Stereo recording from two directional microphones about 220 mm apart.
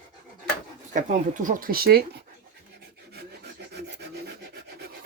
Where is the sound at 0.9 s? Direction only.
35° right (ahead or behind).